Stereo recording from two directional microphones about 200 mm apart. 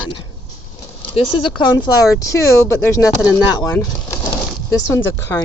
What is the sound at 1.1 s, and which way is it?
Speech, 25° left (ahead or behind).